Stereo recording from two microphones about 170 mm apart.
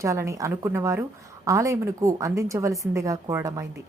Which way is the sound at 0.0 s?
15° right (ahead or behind).